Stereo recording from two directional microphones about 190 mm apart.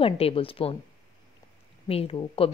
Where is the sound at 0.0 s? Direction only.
30° left (ahead or behind).